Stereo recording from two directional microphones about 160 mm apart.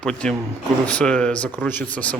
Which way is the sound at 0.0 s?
5° left (ahead or behind).